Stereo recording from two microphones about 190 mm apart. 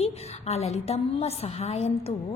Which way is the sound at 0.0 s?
35° left (ahead or behind).